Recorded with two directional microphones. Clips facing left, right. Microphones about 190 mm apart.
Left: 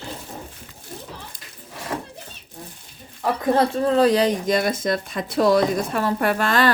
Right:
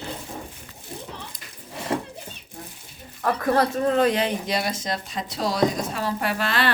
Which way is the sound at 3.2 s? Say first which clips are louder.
Left 2 dB; 20° left (ahead or behind).